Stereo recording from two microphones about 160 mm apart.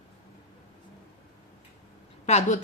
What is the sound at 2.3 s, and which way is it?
Speech, 45° left (ahead or behind).